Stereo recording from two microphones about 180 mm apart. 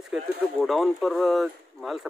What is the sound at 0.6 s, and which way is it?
Speech, centre (ahead or behind).